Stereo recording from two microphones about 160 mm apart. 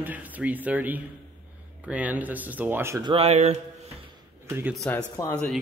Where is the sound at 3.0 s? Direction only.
35° right (ahead or behind).